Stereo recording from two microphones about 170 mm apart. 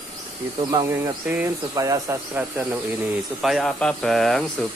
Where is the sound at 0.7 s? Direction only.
20° right (ahead or behind).